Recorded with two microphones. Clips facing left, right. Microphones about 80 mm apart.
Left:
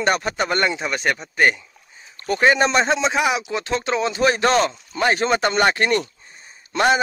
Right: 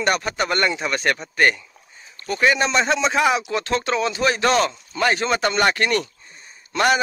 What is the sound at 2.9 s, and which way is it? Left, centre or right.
Speech, left.